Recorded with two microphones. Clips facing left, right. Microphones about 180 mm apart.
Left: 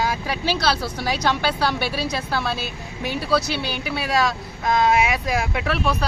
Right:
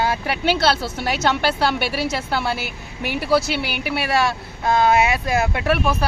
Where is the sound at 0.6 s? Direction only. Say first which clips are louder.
Right 3 dB; 25° right (ahead or behind).